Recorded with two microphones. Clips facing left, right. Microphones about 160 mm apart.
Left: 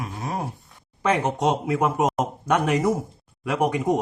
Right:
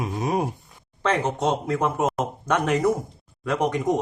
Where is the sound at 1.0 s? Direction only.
10° left (ahead or behind).